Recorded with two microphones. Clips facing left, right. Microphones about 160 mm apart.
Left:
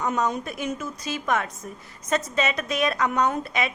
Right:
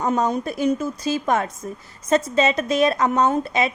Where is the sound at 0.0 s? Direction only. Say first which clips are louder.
Right 4 dB; 30° right (ahead or behind).